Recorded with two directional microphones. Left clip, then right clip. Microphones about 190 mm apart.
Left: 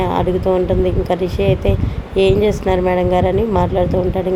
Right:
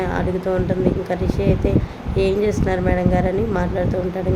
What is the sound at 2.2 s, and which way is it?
Speech, 20° left (ahead or behind).